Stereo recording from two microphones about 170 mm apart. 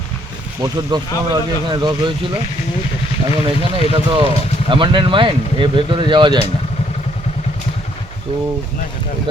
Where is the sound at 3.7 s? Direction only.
35° right (ahead or behind).